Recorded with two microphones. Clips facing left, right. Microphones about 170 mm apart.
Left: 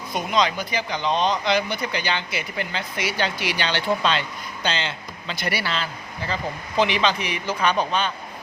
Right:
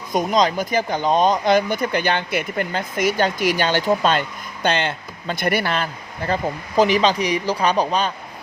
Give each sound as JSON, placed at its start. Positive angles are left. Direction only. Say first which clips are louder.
{"t": 0.1, "sound": "speech", "louder": "right 4 dB", "side_deg": -40}